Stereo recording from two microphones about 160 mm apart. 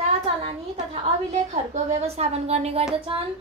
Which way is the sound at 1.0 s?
45° right (ahead or behind).